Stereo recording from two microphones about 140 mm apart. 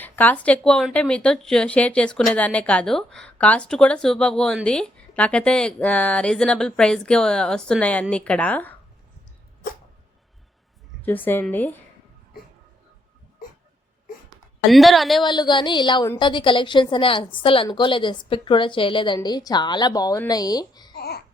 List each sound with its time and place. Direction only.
0.0 s a woman's voice: 10° left (ahead or behind)
11.0 s a woman's voice: 15° left (ahead or behind)
14.3 s a sound: centre (ahead or behind)
15.2 s a woman's voice: 35° left (ahead or behind)